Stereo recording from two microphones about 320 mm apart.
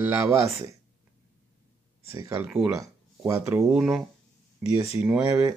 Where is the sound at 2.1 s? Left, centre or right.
Centre.